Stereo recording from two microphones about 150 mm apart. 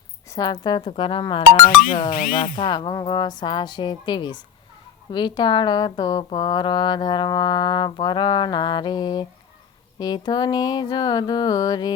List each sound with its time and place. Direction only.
0.3 s speech: 25° left (ahead or behind)
1.6 s speech: 70° left (ahead or behind)
2.6 s speech: 30° left (ahead or behind)